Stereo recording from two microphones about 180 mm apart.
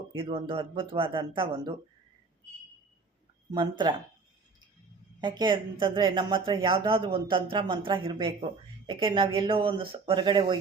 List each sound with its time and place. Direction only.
0.1 s speech: 30° right (ahead or behind)
3.5 s speech: 25° right (ahead or behind)
5.2 s speech: 25° right (ahead or behind)